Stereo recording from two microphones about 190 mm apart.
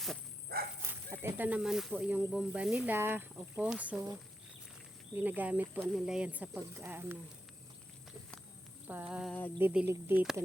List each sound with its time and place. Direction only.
0.5 s dog: 55° right (ahead or behind)
1.1 s speech: 10° right (ahead or behind)
8.9 s speech: 10° right (ahead or behind)